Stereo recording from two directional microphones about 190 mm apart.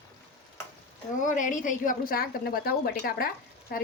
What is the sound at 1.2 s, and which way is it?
A woman's voice, 40° left (ahead or behind).